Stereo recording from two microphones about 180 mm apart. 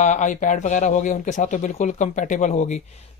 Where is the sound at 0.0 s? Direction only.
45° left (ahead or behind).